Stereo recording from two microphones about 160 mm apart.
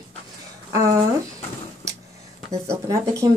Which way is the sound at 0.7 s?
20° right (ahead or behind).